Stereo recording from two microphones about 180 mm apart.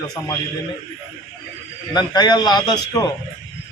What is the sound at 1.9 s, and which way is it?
A man's voice, 25° left (ahead or behind).